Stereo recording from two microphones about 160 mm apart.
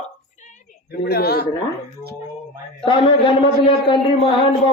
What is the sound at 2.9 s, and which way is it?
A man's voice, 30° left (ahead or behind).